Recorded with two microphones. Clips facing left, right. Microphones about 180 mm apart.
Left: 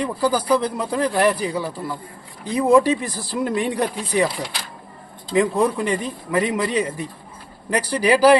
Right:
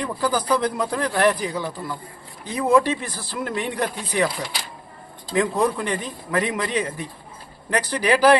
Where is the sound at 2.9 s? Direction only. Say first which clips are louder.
Left 5 dB; 35° left (ahead or behind).